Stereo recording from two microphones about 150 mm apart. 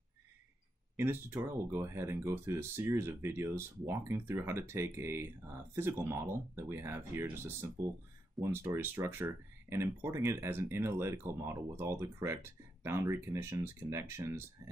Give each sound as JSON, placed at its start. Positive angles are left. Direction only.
{"t": 0.9, "sound": "speech", "side_deg": -15}